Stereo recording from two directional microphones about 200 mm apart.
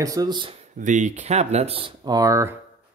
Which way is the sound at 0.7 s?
40° right (ahead or behind).